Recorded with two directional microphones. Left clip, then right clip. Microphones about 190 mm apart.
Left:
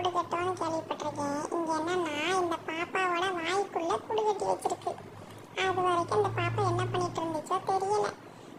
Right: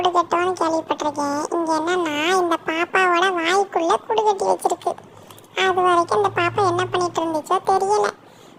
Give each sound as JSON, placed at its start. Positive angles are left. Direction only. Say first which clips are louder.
{"t": 0.0, "sound": "speech", "louder": "right 12 dB", "side_deg": -40}